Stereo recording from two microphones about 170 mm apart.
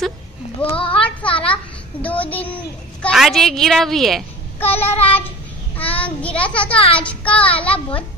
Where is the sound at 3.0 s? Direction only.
Centre (ahead or behind).